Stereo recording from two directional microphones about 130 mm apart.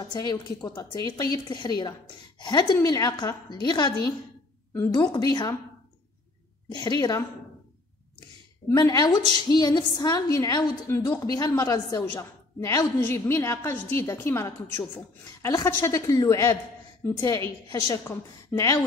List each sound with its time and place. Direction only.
0.0 s speech: 30° left (ahead or behind)
6.7 s speech: 30° left (ahead or behind)
8.6 s a woman's voice: 30° left (ahead or behind)